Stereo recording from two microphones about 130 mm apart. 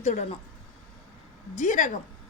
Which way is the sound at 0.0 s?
65° left (ahead or behind).